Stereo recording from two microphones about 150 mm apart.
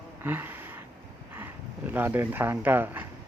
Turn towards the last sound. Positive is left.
turn(degrees=-15)  # may be behind; listen again after turning